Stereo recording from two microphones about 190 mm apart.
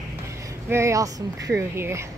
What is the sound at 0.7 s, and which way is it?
Speech, 15° right (ahead or behind).